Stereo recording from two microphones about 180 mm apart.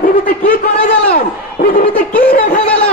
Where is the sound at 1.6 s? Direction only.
50° left (ahead or behind).